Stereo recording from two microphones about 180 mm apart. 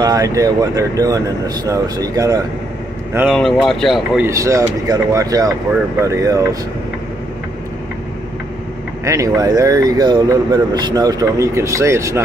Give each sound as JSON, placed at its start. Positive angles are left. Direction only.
{"t": 0.0, "sound": "speech", "side_deg": -20}
{"t": 3.3, "sound": "speech", "side_deg": 5}
{"t": 4.3, "sound": "speech", "side_deg": -20}
{"t": 9.0, "sound": "speech", "side_deg": -20}